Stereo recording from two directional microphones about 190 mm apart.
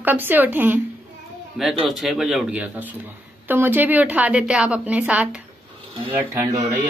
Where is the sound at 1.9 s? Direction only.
Centre (ahead or behind); by 6.7 s 15° right (ahead or behind).